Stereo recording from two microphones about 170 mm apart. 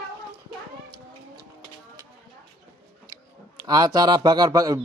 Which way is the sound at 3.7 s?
20° right (ahead or behind).